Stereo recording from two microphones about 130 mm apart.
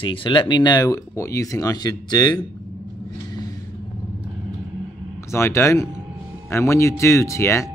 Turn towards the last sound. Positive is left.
turn(degrees=20)  # may be behind; listen again after turning